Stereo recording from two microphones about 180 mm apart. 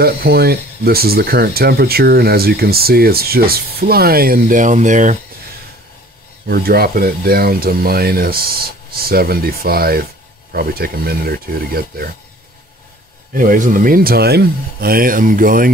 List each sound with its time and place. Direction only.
0.0 s speech: 60° right (ahead or behind)
6.4 s speech: 60° right (ahead or behind)
13.3 s speech: 50° right (ahead or behind)